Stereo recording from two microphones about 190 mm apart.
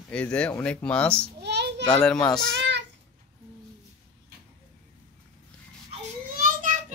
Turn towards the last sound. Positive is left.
turn(degrees=-40)  # may be behind; listen again after turning